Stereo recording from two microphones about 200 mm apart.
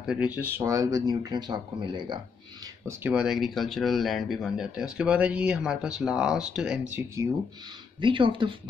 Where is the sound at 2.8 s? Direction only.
10° right (ahead or behind).